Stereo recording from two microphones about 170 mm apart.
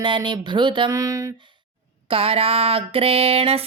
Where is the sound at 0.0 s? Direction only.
25° right (ahead or behind).